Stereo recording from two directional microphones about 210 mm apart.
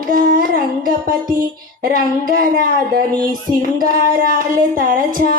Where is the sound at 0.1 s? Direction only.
45° right (ahead or behind).